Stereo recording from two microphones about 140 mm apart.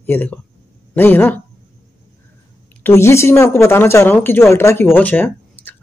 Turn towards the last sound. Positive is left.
turn(degrees=10)  # may be behind; listen again after turning